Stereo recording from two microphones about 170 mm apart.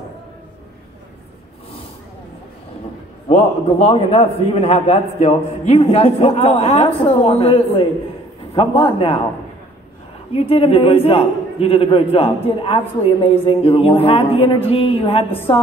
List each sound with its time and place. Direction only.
3.3 s a man's voice: 35° left (ahead or behind)
10.3 s a man's voice: 35° left (ahead or behind)